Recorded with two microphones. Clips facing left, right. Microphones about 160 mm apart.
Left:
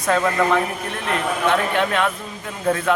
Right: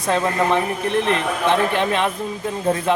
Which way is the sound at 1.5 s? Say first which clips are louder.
Right 2 dB; 30° right (ahead or behind).